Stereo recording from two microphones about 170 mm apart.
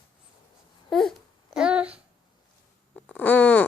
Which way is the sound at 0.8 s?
Centre (ahead or behind).